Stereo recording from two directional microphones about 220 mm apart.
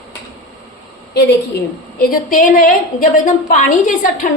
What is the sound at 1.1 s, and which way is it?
A woman's voice, 50° left (ahead or behind).